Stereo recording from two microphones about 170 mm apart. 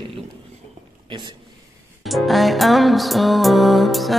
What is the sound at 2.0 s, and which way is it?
Music, centre (ahead or behind).